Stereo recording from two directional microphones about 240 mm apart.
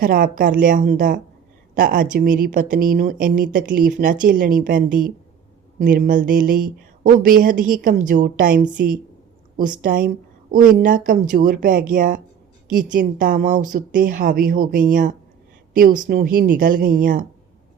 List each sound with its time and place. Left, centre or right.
0.0 s speech: right
5.8 s speech: right
9.8 s speech: right